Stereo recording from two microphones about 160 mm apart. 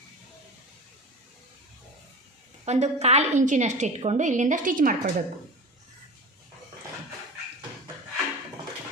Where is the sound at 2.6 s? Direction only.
45° right (ahead or behind).